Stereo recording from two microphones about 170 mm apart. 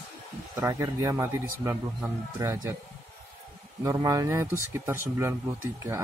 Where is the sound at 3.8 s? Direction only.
20° right (ahead or behind).